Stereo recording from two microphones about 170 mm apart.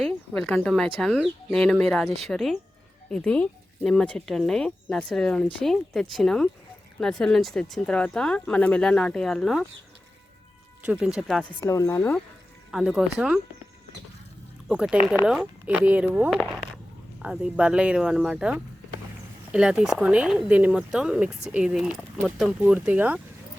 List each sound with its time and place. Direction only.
0.0 s speech: 5° left (ahead or behind)
10.8 s speech: 5° right (ahead or behind)
11.6 s speech: 20° left (ahead or behind)
12.7 s speech: 5° right (ahead or behind)
14.7 s speech: 5° right (ahead or behind)
16.4 s a sound: centre (ahead or behind)
17.2 s speech: 5° right (ahead or behind)